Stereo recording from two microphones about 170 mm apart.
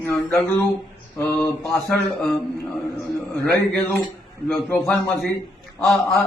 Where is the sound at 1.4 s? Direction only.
15° left (ahead or behind).